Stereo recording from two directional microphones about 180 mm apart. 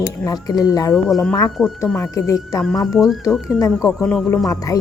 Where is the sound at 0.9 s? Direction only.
Centre (ahead or behind).